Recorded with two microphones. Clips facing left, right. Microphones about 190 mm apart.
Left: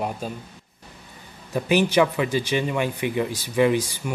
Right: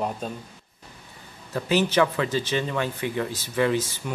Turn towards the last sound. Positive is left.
turn(degrees=15)  # may be behind; listen again after turning